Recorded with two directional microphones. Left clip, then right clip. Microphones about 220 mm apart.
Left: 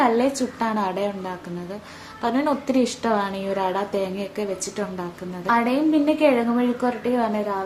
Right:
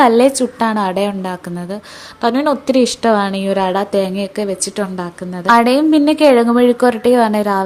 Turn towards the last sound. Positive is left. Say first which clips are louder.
# right 10 dB
turn(degrees=-45)  # may be behind; listen again after turning